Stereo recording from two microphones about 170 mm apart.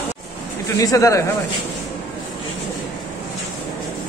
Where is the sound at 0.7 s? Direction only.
20° left (ahead or behind).